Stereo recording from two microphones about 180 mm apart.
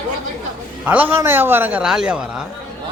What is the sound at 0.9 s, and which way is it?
A man's voice, 10° right (ahead or behind).